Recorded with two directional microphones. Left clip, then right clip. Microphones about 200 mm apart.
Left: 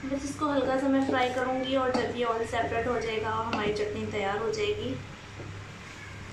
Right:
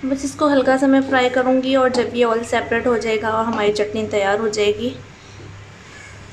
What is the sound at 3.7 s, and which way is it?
Speech, 55° right (ahead or behind).